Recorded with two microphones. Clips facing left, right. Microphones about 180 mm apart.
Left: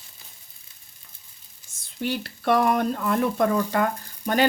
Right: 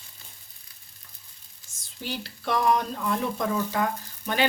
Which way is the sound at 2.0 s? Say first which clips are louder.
Left 7 dB; 55° left (ahead or behind).